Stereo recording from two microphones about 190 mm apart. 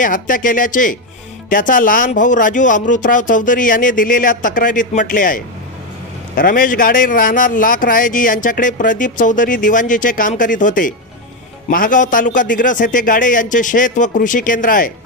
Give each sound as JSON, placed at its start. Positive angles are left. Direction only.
{"t": 0.0, "sound": "a man's voice", "side_deg": 45}